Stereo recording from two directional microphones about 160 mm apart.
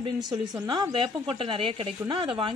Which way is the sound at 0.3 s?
25° right (ahead or behind).